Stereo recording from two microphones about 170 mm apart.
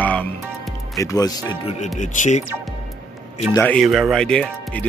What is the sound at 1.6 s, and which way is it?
Speech, 40° left (ahead or behind).